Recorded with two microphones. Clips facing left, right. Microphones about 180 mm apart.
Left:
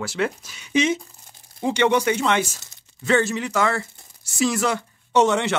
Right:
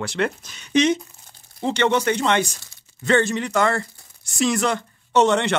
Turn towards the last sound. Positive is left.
turn(degrees=5)  # may be behind; listen again after turning